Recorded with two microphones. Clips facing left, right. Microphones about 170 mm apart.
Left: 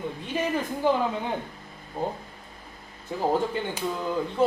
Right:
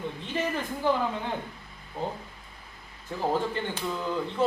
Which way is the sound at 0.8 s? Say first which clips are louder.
Left 2 dB; 15° left (ahead or behind).